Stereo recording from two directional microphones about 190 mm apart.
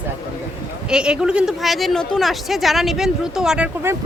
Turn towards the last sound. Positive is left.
turn(degrees=-5)  # may be behind; listen again after turning